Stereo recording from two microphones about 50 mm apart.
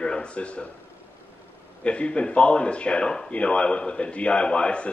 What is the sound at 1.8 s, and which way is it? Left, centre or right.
Speech, left.